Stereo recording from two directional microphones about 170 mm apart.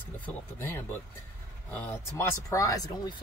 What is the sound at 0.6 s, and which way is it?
Speech, 15° left (ahead or behind).